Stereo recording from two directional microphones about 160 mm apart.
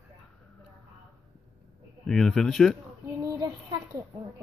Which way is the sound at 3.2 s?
20° right (ahead or behind).